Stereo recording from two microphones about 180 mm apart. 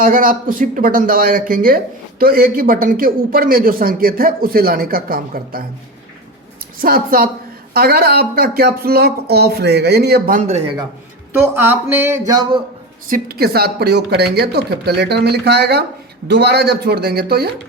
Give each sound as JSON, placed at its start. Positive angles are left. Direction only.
{"t": 0.0, "sound": "speech", "side_deg": -50}
{"t": 6.7, "sound": "speech", "side_deg": -55}
{"t": 11.5, "sound": "a sound", "side_deg": -10}
{"t": 13.1, "sound": "speech", "side_deg": -50}